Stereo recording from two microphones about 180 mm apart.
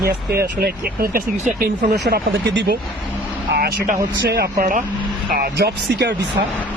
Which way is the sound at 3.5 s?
60° right (ahead or behind).